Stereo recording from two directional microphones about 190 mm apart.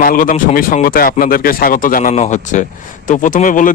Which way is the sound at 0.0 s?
45° left (ahead or behind).